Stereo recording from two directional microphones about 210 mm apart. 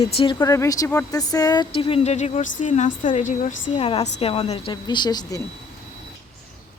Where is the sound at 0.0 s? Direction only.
20° left (ahead or behind).